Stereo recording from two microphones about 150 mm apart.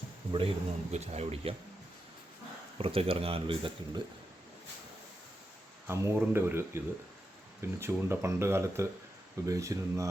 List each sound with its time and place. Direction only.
0.3 s speech: 45° right (ahead or behind)
2.7 s speech: 40° right (ahead or behind)
5.9 s speech: 15° right (ahead or behind)